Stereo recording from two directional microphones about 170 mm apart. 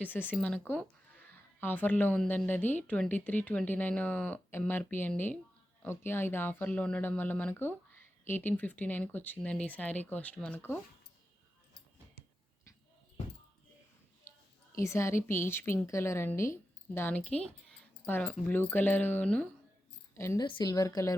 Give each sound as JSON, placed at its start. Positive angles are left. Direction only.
{"t": 0.0, "sound": "speech", "side_deg": 10}
{"t": 14.8, "sound": "a woman's voice", "side_deg": 15}
{"t": 20.4, "sound": "a woman's voice", "side_deg": 25}